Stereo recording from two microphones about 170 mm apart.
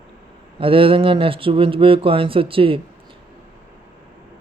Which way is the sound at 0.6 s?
30° right (ahead or behind).